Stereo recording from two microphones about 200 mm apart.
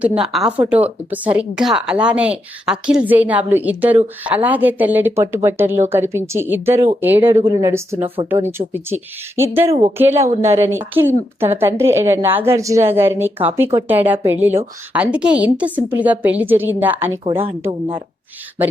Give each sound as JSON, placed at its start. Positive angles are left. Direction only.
{"t": 0.3, "sound": "speech", "side_deg": -5}
{"t": 7.9, "sound": "speech", "side_deg": -30}
{"t": 8.5, "sound": "speech", "side_deg": -10}
{"t": 9.6, "sound": "a woman's voice", "side_deg": -30}
{"t": 10.0, "sound": "speech", "side_deg": -15}
{"t": 17.7, "sound": "speech", "side_deg": -25}